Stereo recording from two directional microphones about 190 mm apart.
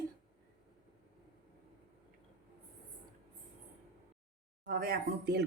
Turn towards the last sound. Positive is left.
turn(degrees=-55)  # may be behind; listen again after turning